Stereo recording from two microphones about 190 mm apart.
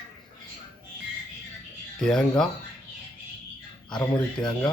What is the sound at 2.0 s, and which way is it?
Speech, 5° left (ahead or behind).